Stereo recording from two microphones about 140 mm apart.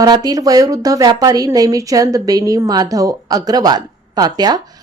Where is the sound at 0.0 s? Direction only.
25° right (ahead or behind).